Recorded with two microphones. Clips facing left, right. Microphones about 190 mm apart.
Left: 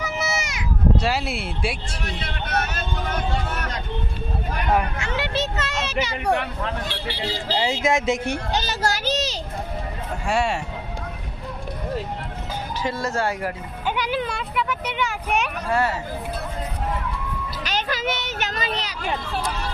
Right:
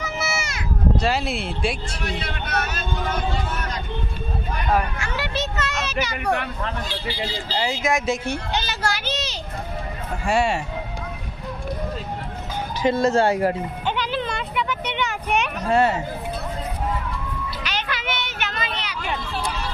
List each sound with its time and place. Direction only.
0.0 s a sound: 15° left (ahead or behind)
0.9 s speech: 5° left (ahead or behind)
2.0 s vehicle: 50° left (ahead or behind)
4.7 s a sound: 25° left (ahead or behind)
7.5 s speech: 25° left (ahead or behind)
8.5 s children playing: 40° left (ahead or behind)
10.2 s speech: centre (ahead or behind)
12.8 s speech: 25° right (ahead or behind)
13.8 s vehicle: 10° left (ahead or behind)
15.7 s speech: 25° right (ahead or behind)
17.6 s a sound: 45° left (ahead or behind)